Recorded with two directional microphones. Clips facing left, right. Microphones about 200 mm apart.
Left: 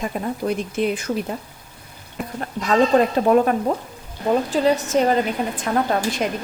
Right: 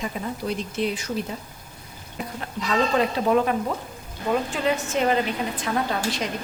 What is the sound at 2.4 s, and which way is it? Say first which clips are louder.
A woman's voice: left 6 dB; 45° left (ahead or behind).